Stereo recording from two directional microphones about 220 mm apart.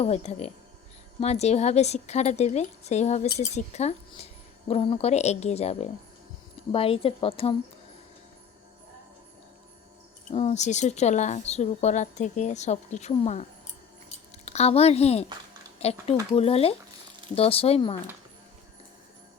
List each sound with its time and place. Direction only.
0.0 s a woman's voice: 30° left (ahead or behind)
10.3 s a woman's voice: 30° left (ahead or behind)
14.4 s a woman's voice: 30° left (ahead or behind)